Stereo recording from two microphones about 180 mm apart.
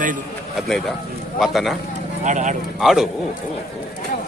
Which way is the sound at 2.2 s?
40° right (ahead or behind).